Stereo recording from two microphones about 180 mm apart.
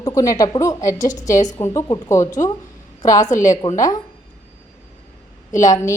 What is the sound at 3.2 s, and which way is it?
Speech, 45° left (ahead or behind).